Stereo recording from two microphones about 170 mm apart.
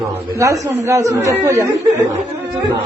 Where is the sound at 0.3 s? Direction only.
20° right (ahead or behind).